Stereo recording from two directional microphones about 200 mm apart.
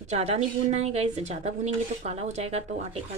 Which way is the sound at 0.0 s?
35° right (ahead or behind).